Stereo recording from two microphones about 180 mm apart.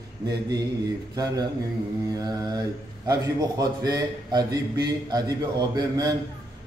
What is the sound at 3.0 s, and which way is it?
A man's voice, 20° right (ahead or behind).